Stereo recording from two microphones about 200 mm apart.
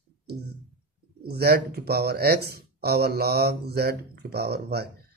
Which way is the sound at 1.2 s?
50° right (ahead or behind).